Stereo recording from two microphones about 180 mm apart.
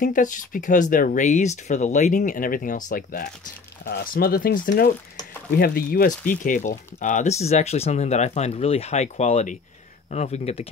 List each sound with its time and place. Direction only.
0.0 s speech: 45° left (ahead or behind)